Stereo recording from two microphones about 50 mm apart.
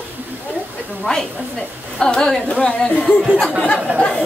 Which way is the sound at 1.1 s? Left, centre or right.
Centre.